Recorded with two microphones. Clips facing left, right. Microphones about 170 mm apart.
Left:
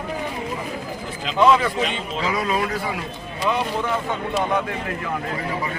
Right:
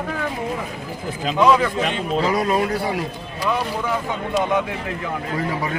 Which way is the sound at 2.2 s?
35° right (ahead or behind).